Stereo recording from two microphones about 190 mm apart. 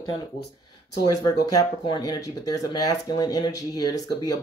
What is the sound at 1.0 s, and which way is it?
Speech, 20° left (ahead or behind).